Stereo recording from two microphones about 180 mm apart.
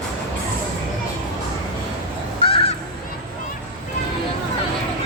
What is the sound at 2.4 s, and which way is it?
Honk, 30° left (ahead or behind).